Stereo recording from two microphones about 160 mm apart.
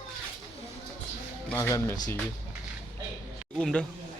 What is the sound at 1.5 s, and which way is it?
Speech, 15° left (ahead or behind).